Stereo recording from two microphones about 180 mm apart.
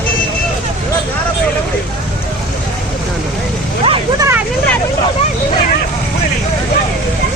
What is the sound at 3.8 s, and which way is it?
Vehicle, 30° right (ahead or behind).